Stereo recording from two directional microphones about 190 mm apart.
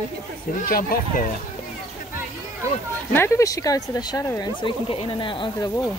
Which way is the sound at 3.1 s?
15° left (ahead or behind).